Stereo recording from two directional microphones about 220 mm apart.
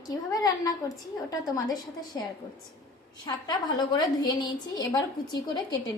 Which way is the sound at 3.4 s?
20° left (ahead or behind).